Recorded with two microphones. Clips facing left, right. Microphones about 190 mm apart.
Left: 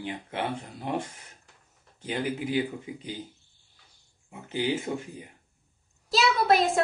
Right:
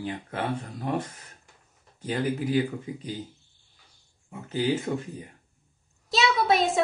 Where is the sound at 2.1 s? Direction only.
10° left (ahead or behind).